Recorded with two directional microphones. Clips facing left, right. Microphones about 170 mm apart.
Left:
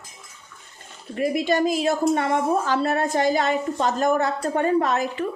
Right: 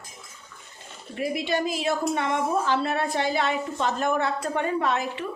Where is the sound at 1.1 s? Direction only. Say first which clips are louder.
Left 5 dB; 45° left (ahead or behind).